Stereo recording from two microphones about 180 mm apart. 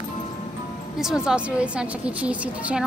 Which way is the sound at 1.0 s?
5° right (ahead or behind).